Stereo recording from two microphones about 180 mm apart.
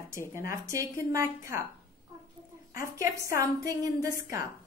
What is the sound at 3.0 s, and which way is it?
A woman's voice, 15° right (ahead or behind).